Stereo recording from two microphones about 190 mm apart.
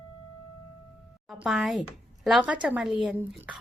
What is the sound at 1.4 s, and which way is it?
A woman's voice, centre (ahead or behind).